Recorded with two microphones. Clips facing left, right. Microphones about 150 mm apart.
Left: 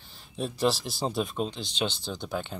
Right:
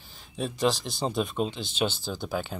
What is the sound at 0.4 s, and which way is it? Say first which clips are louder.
Speech: even; centre (ahead or behind).